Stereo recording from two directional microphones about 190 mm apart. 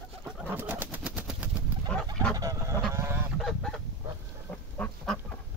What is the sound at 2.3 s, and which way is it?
Goose, 15° right (ahead or behind).